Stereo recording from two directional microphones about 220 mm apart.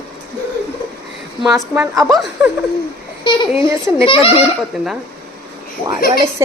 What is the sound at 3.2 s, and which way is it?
A woman's voice, 20° left (ahead or behind).